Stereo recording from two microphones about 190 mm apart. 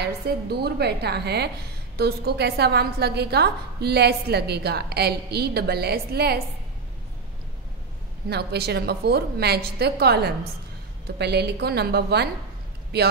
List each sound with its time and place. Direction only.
0.0 s a woman's voice: 55° right (ahead or behind)
8.3 s a woman's voice: 60° right (ahead or behind)